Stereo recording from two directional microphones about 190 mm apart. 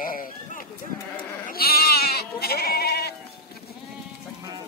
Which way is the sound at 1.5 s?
55° left (ahead or behind).